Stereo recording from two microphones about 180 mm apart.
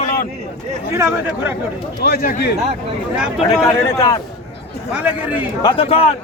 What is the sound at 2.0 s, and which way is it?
Speech, 65° left (ahead or behind).